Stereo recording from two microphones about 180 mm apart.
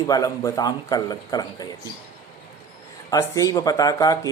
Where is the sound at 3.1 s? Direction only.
20° left (ahead or behind).